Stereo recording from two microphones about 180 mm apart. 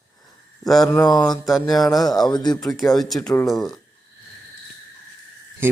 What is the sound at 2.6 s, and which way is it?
Speech, centre (ahead or behind).